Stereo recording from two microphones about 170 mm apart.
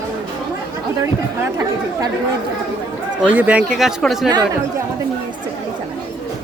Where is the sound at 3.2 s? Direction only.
10° right (ahead or behind).